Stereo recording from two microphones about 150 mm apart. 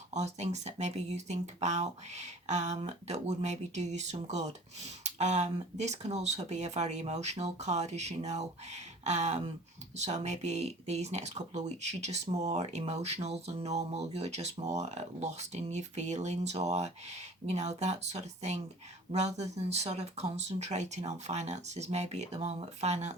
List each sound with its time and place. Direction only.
0.1 s speech: 50° right (ahead or behind)